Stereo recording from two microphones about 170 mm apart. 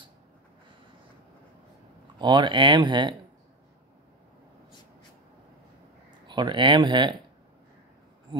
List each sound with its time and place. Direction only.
2.1 s speech: 25° right (ahead or behind)
6.2 s speech: 25° right (ahead or behind)